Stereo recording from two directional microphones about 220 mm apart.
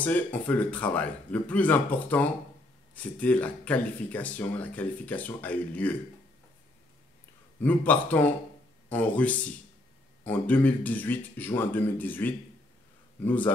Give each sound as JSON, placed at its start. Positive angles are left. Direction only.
{"t": 0.0, "sound": "speech", "side_deg": 5}
{"t": 7.6, "sound": "speech", "side_deg": 5}